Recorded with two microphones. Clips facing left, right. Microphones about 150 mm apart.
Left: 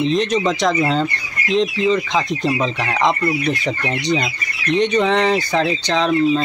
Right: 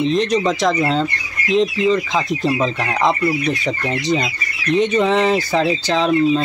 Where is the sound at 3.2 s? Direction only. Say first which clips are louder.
Right 1 dB; 5° right (ahead or behind).